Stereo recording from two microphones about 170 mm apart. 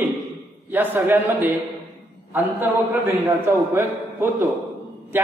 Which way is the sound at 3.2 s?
10° right (ahead or behind).